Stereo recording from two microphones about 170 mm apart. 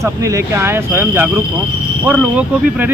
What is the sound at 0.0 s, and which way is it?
Speech, 15° right (ahead or behind).